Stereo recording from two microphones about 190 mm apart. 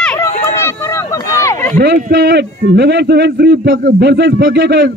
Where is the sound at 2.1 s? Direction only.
60° right (ahead or behind).